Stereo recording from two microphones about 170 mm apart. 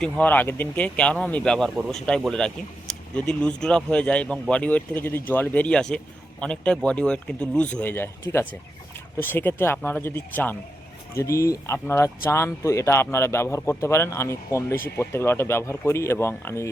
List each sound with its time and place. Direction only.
0.0 s speech: 10° left (ahead or behind)